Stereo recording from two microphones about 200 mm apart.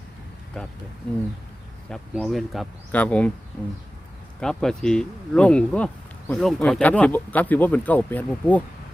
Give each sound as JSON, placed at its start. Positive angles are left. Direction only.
{"t": 2.1, "sound": "speech", "side_deg": 0}
{"t": 4.4, "sound": "speech", "side_deg": 5}